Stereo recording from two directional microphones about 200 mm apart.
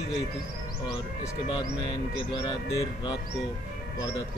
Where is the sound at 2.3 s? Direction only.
20° left (ahead or behind).